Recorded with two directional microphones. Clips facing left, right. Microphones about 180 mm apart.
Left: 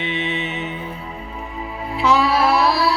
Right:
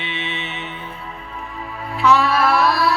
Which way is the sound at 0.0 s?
40° left (ahead or behind).